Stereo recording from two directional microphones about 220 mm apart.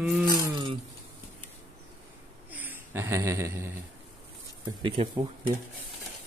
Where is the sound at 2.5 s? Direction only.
10° right (ahead or behind).